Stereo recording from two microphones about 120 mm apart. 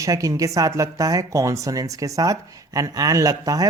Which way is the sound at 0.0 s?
25° right (ahead or behind).